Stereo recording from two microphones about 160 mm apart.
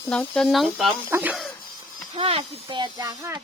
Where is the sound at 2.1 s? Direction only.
35° right (ahead or behind); by 3.4 s 20° right (ahead or behind).